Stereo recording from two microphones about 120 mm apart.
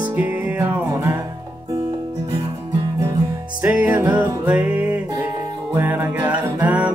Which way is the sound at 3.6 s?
15° right (ahead or behind).